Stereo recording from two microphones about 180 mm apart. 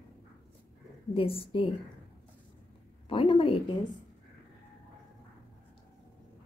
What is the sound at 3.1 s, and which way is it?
Speech, 30° left (ahead or behind).